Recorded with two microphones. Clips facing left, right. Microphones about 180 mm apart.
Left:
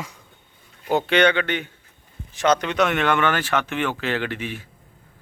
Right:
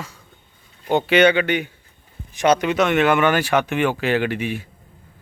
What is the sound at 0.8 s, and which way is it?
Speech, centre (ahead or behind).